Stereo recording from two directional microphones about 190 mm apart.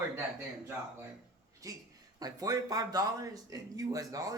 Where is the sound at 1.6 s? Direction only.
20° right (ahead or behind).